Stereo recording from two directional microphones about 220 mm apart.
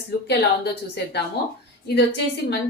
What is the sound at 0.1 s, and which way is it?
Speech, 45° left (ahead or behind).